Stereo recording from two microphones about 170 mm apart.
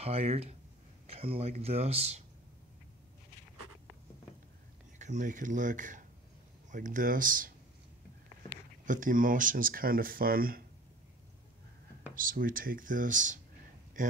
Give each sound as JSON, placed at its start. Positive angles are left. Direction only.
{"t": 0.0, "sound": "speech", "side_deg": -35}
{"t": 4.9, "sound": "speech", "side_deg": -45}
{"t": 8.8, "sound": "speech", "side_deg": -50}
{"t": 12.2, "sound": "speech", "side_deg": -55}